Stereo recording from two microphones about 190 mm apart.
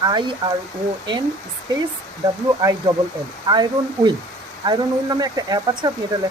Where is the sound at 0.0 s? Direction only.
25° right (ahead or behind).